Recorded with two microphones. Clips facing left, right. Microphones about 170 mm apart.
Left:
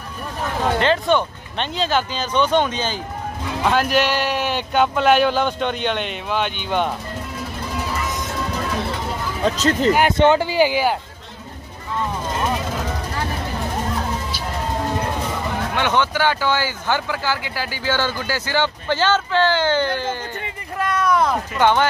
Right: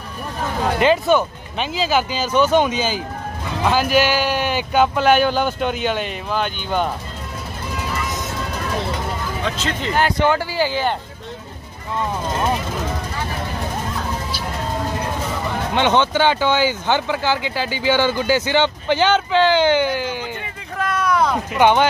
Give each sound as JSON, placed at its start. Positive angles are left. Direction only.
{"t": 0.7, "sound": "speech", "side_deg": -10}
{"t": 9.4, "sound": "speech", "side_deg": 40}
{"t": 9.9, "sound": "speech", "side_deg": 20}
{"t": 15.7, "sound": "speech", "side_deg": -20}
{"t": 20.7, "sound": "a sound", "side_deg": 0}
{"t": 21.5, "sound": "speech", "side_deg": -15}